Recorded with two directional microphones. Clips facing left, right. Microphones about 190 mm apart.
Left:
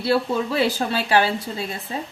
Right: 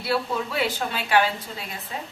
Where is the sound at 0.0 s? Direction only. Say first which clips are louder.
Left 5 dB; 30° left (ahead or behind).